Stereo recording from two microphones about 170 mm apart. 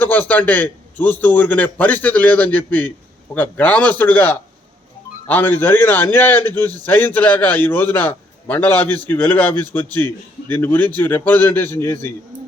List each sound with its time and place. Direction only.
0.0 s a man's voice: 10° left (ahead or behind)